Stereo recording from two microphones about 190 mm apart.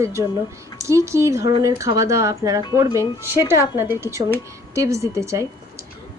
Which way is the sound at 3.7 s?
10° right (ahead or behind).